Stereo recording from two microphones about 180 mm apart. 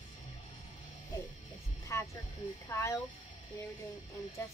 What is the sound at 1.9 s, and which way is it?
Vehicle, 15° left (ahead or behind).